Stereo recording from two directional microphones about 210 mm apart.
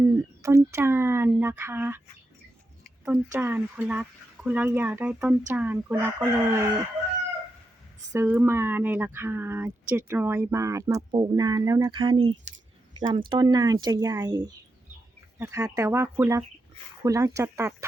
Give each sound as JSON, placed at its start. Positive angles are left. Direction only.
{"t": 0.4, "sound": "speech", "side_deg": -15}
{"t": 3.0, "sound": "speech", "side_deg": -10}
{"t": 8.1, "sound": "speech", "side_deg": -10}